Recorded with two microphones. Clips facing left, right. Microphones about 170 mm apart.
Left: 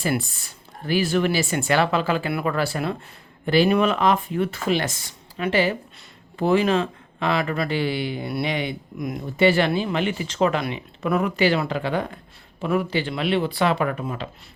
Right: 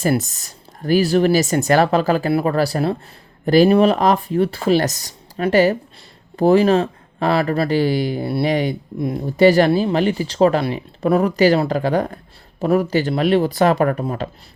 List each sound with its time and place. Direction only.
0.0 s speech: 40° right (ahead or behind)